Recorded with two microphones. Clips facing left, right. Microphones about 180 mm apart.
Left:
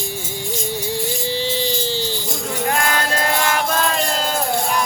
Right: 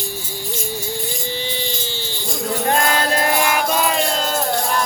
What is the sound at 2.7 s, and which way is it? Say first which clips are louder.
Music: right 2 dB; 25° right (ahead or behind).